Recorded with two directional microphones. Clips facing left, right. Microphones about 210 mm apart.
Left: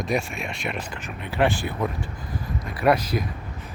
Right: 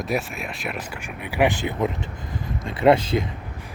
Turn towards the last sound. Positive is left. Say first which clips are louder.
# right 4 dB
turn(degrees=-25)  # may be behind; listen again after turning